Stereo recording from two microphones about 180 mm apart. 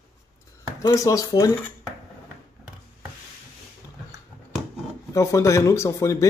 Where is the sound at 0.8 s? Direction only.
20° left (ahead or behind).